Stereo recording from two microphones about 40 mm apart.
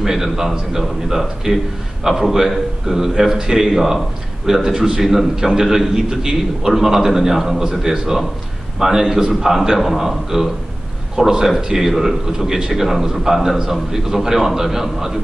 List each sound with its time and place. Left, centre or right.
0.0 s a man's voice: centre